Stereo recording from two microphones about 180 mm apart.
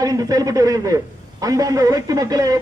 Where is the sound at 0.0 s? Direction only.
20° right (ahead or behind).